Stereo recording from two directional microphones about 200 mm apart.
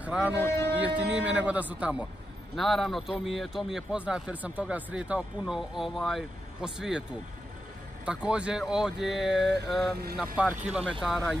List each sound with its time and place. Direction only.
0.0 s music: 5° right (ahead or behind)
0.7 s a man's voice: 5° right (ahead or behind)
9.6 s vehicle: 50° right (ahead or behind)
10.1 s a man's voice: 5° right (ahead or behind)